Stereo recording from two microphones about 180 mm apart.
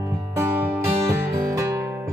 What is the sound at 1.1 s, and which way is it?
Music, 15° right (ahead or behind).